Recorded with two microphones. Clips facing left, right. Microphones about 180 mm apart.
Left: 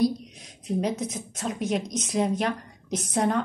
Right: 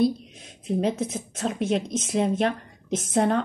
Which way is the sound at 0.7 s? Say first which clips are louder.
Right 2 dB; 25° right (ahead or behind).